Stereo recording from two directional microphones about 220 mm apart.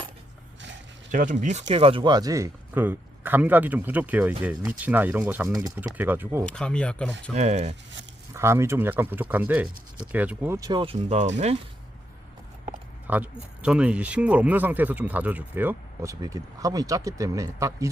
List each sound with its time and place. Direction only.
1.1 s speech: 35° right (ahead or behind); by 6.4 s 10° right (ahead or behind)
6.4 s speech: 5° left (ahead or behind)
7.3 s speech: 30° right (ahead or behind)
8.3 s speech: 10° right (ahead or behind); by 11.3 s 30° right (ahead or behind)
13.1 s speech: 5° right (ahead or behind)